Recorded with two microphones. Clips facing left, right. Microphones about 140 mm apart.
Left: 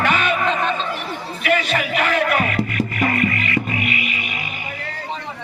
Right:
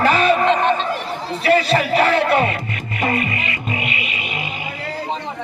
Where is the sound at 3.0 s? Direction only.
25° right (ahead or behind).